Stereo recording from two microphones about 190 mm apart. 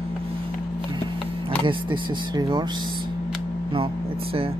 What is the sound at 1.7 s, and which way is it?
Speech, 25° right (ahead or behind).